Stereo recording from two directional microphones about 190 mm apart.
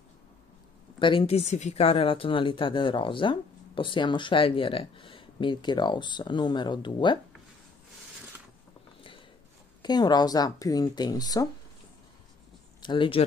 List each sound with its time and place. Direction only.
0.9 s speech: 25° left (ahead or behind)
9.8 s speech: 20° left (ahead or behind)
12.8 s speech: 25° left (ahead or behind)